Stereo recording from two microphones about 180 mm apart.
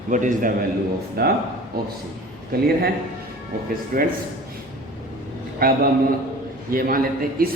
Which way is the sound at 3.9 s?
55° right (ahead or behind).